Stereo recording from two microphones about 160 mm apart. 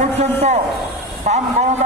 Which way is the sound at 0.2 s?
45° right (ahead or behind).